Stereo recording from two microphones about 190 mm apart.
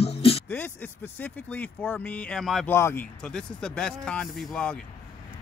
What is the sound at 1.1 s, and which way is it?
Speech, 10° left (ahead or behind).